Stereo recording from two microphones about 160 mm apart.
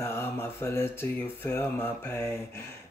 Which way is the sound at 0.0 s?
15° left (ahead or behind).